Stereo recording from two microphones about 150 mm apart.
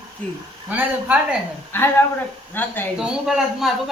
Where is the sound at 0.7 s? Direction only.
10° right (ahead or behind).